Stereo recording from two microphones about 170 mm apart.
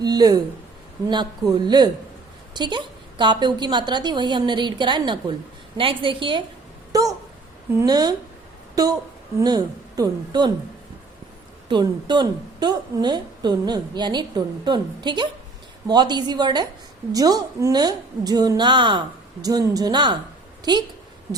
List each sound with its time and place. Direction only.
0.0 s a woman's voice: 25° right (ahead or behind)
11.7 s a woman's voice: 25° right (ahead or behind)